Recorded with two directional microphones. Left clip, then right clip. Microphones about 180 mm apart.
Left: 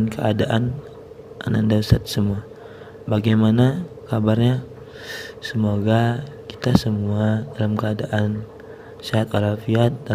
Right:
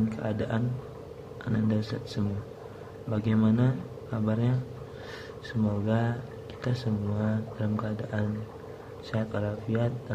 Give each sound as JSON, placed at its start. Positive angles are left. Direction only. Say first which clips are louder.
{"t": 0.1, "sound": "speech", "louder": "left 11 dB", "side_deg": 55}